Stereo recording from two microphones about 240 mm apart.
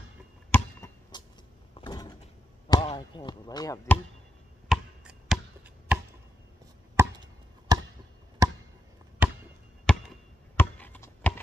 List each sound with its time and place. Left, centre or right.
0.5 s chop: centre
1.8 s a sound: centre
2.7 s speech: left
4.6 s chop: centre
7.0 s chop: centre
9.8 s chop: centre